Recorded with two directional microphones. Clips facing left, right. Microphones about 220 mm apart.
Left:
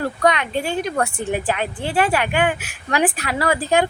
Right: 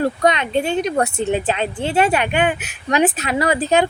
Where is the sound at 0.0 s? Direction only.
20° right (ahead or behind).